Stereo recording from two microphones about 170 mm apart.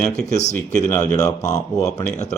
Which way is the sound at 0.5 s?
15° left (ahead or behind).